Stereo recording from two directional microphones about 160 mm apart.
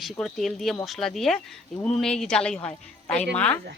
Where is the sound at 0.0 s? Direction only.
Centre (ahead or behind).